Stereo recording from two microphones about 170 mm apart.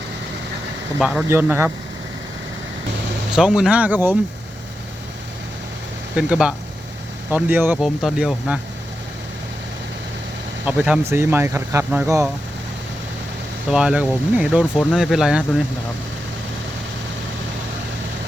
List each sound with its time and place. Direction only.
0.9 s speech: 5° right (ahead or behind)
1.3 s speech: 15° right (ahead or behind)
3.3 s speech: 5° right (ahead or behind)
6.1 s speech: 5° right (ahead or behind)
10.7 s speech: 5° right (ahead or behind)
13.7 s speech: 5° right (ahead or behind)